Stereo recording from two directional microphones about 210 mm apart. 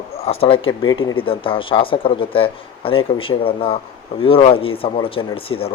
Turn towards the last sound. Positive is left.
turn(degrees=25)  # may be behind; listen again after turning